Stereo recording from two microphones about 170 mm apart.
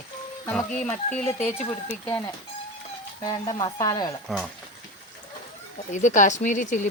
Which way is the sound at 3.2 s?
25° left (ahead or behind).